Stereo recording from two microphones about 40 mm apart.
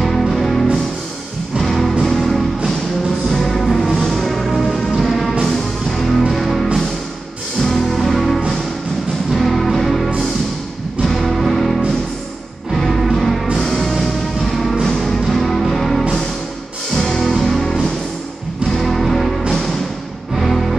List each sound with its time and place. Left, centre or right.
0.0 s music: centre
18.8 s music: centre